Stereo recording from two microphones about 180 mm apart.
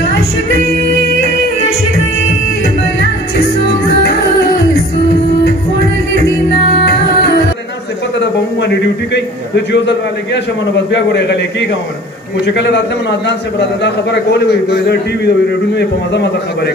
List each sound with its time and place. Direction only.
6.8 s music: 70° left (ahead or behind)
8.5 s a man's voice: 75° left (ahead or behind)
12.4 s a man's voice: 70° left (ahead or behind)
14.5 s a man's voice: 65° left (ahead or behind)